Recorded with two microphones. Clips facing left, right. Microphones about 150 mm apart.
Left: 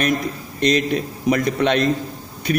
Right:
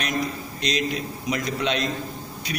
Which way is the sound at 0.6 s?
50° left (ahead or behind).